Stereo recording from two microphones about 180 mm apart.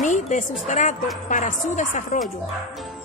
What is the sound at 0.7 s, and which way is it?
A woman's voice, 45° left (ahead or behind).